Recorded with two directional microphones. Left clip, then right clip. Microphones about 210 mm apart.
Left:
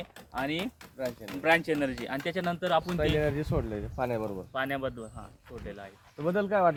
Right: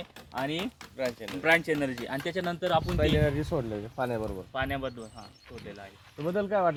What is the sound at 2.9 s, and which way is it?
Speech, 45° right (ahead or behind).